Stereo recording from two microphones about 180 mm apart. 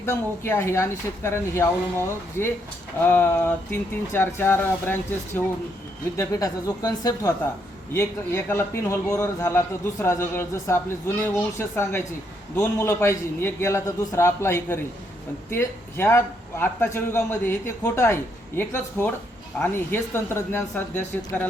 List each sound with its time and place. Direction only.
0.0 s a man's voice: 15° left (ahead or behind)
3.0 s a man's voice: 10° left (ahead or behind)